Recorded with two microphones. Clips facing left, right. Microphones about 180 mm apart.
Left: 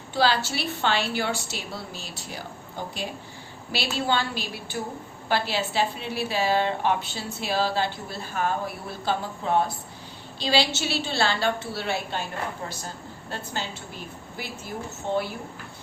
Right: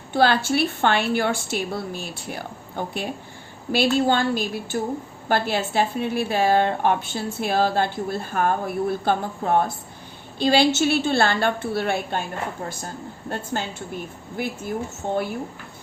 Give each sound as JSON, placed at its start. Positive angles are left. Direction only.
{"t": 0.1, "sound": "a woman's voice", "side_deg": -55}
{"t": 13.5, "sound": "a woman's voice", "side_deg": -50}